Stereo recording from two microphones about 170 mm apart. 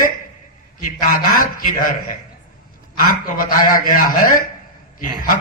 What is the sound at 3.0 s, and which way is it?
A man's voice, 55° left (ahead or behind).